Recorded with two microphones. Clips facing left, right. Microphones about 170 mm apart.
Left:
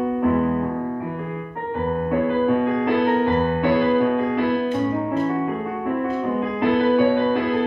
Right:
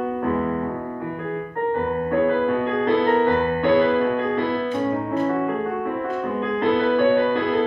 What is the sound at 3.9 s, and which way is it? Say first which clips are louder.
Music: left 1 dB; 10° left (ahead or behind).